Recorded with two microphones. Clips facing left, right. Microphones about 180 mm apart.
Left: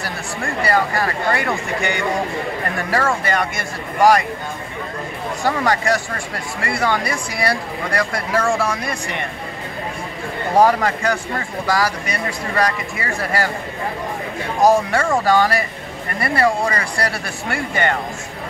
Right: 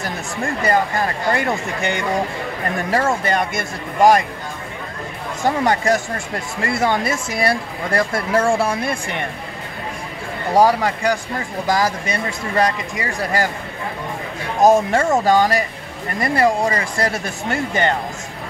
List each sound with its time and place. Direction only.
0.0 s speech: 20° right (ahead or behind)
2.9 s speech: 20° right (ahead or behind)
5.4 s speech: 20° right (ahead or behind)
10.6 s a man's voice: 10° right (ahead or behind)
11.6 s speech: 20° right (ahead or behind)
14.6 s speech: 20° right (ahead or behind)